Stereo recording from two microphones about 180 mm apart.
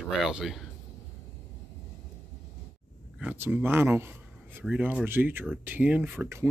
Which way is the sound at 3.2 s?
10° right (ahead or behind).